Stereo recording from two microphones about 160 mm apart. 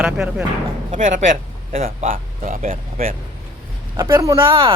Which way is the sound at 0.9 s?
50° right (ahead or behind).